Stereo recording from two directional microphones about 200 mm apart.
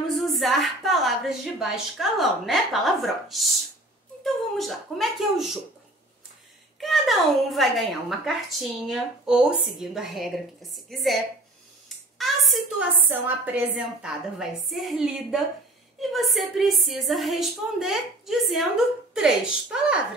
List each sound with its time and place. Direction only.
0.1 s a woman's voice: centre (ahead or behind)
6.8 s a woman's voice: centre (ahead or behind)
12.2 s a woman's voice: centre (ahead or behind)